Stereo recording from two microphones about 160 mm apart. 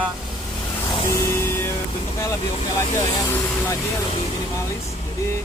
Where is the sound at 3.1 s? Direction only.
20° left (ahead or behind).